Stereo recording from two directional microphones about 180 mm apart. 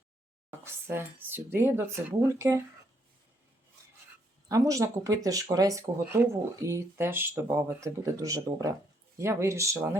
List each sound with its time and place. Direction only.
0.6 s speech: 15° right (ahead or behind)
4.4 s speech: 20° right (ahead or behind)